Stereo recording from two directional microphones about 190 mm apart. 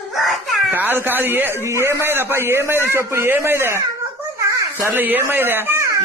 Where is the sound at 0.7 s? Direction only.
10° right (ahead or behind).